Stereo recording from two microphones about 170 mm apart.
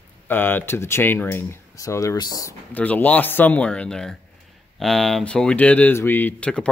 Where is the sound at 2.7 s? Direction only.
10° left (ahead or behind).